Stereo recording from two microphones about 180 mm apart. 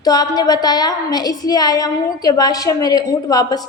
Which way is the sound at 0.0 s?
20° left (ahead or behind).